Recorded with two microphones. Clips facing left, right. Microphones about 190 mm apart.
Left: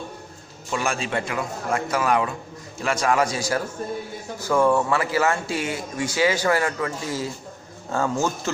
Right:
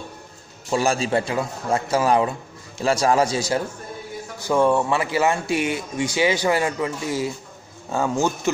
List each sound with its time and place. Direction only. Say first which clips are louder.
0.7 s a man's voice: right 5 dB; 35° right (ahead or behind); by 8.3 s 15° right (ahead or behind)